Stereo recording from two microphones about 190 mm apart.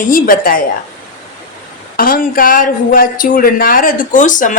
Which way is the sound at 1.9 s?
50° left (ahead or behind).